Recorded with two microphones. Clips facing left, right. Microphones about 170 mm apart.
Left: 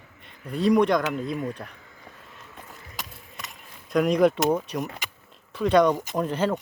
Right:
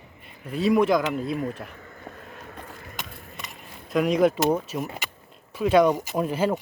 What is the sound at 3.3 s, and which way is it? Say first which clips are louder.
Speech: left 1 dB; centre (ahead or behind).